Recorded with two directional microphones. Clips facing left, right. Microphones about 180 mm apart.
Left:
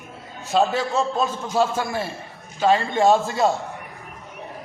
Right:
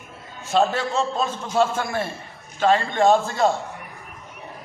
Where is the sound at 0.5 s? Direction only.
Centre (ahead or behind).